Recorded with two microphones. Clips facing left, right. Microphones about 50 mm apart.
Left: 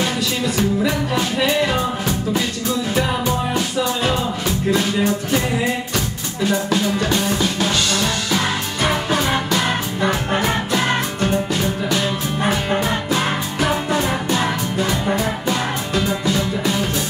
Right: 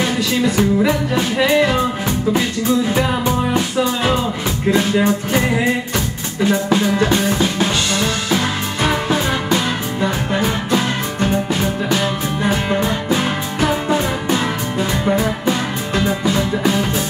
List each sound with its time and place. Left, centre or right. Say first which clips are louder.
0.6 s music: right 2 dB; right
2.9 s music: right 2 dB; centre
6.4 s drum: right 3 dB; right
10.4 s music: right 1 dB; centre